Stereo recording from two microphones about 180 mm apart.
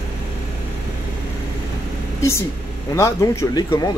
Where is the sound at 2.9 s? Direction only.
15° left (ahead or behind).